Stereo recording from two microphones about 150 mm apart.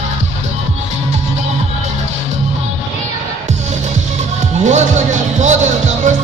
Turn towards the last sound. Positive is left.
turn(degrees=-50)  # may be behind; listen again after turning